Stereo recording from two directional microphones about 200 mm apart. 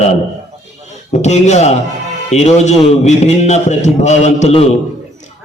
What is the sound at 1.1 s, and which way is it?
A man's voice, 35° left (ahead or behind).